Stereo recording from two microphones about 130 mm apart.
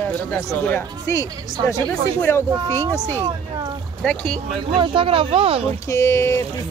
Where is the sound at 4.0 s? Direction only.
5° left (ahead or behind).